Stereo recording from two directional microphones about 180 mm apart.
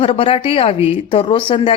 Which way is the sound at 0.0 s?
30° left (ahead or behind).